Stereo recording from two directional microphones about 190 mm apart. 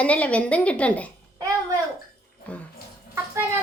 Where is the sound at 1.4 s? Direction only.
20° right (ahead or behind).